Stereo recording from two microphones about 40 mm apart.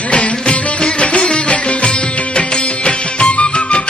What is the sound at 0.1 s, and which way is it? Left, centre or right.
Music, left.